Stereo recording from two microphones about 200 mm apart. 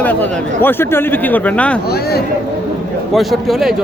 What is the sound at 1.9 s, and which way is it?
Speech, 55° left (ahead or behind).